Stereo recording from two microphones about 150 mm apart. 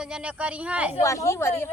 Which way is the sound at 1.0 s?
20° left (ahead or behind).